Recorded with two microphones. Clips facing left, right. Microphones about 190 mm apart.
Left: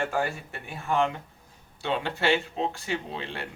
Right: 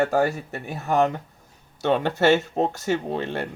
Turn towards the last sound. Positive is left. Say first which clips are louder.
# right 8 dB
turn(degrees=-45)  # may be behind; listen again after turning